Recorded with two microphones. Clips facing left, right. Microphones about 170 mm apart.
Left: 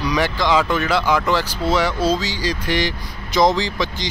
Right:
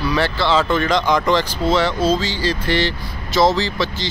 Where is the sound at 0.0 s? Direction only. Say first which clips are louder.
Right 1 dB; 15° left (ahead or behind).